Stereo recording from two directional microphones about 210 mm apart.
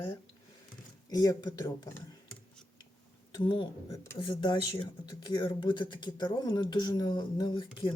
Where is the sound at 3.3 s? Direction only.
25° left (ahead or behind).